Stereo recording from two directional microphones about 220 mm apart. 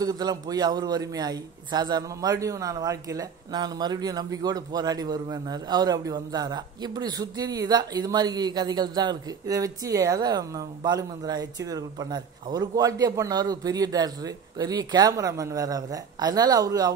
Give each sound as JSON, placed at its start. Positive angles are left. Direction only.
{"t": 0.0, "sound": "a man's voice", "side_deg": -15}